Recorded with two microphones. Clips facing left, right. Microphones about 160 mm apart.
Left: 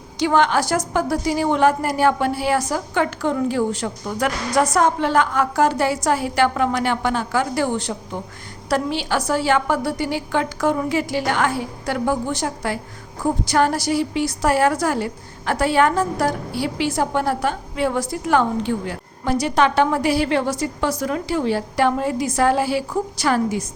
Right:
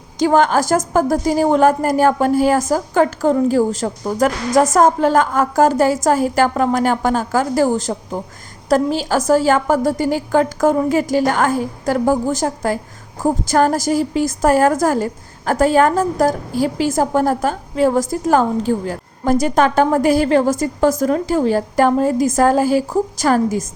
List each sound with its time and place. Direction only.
0.2 s a woman's voice: 45° right (ahead or behind)